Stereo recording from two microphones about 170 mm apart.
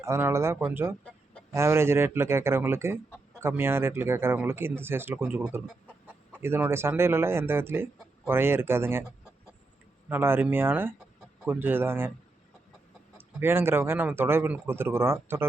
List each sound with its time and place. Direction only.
0.0 s speech: 15° right (ahead or behind)
1.0 s chicken: 5° left (ahead or behind)
1.5 s speech: 15° right (ahead or behind)
10.1 s speech: 15° right (ahead or behind)
13.1 s speech: 15° right (ahead or behind)